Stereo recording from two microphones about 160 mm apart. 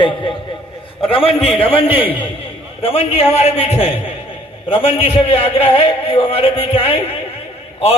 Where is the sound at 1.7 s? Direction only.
35° left (ahead or behind).